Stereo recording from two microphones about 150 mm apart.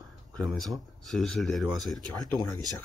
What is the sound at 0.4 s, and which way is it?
Speech, centre (ahead or behind).